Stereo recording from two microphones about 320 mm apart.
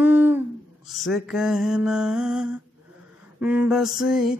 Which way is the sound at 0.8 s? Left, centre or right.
Centre.